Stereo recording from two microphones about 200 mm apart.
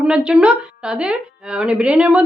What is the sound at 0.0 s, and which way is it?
A woman's voice, 5° right (ahead or behind).